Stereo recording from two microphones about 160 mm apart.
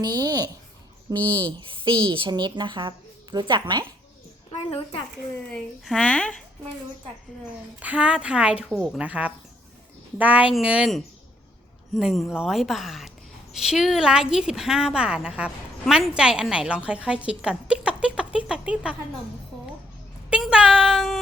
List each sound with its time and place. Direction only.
0.0 s speech: 25° right (ahead or behind)
1.1 s speech: 10° left (ahead or behind)
1.5 s a woman's voice: 30° right (ahead or behind)
5.8 s a woman's voice: 5° left (ahead or behind)
7.8 s a woman's voice: 10° right (ahead or behind)
20.3 s speech: 5° right (ahead or behind)